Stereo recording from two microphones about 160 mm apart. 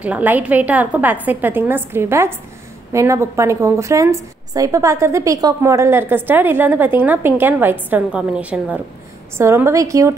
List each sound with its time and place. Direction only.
0.0 s a woman's voice: 10° right (ahead or behind)